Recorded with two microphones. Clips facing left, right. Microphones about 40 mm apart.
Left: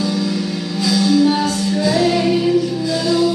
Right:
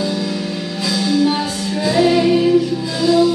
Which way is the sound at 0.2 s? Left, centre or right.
Centre.